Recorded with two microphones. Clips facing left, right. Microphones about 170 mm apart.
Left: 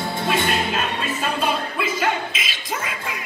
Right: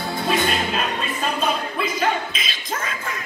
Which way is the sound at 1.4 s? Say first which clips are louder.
Even; 5° left (ahead or behind).